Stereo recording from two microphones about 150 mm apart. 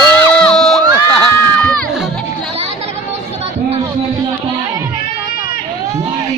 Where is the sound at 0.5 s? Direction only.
5° left (ahead or behind).